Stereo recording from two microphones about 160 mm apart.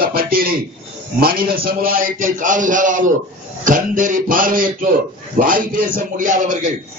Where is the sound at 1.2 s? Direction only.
65° right (ahead or behind).